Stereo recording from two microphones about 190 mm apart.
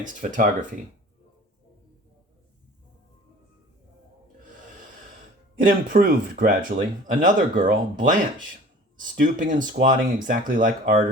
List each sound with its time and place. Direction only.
0.0 s speech: 40° right (ahead or behind)
5.6 s speech: 45° right (ahead or behind)